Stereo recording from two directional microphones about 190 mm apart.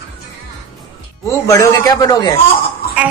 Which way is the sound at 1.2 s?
15° left (ahead or behind).